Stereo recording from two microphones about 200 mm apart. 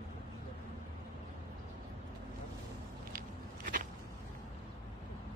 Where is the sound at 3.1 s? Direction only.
40° right (ahead or behind).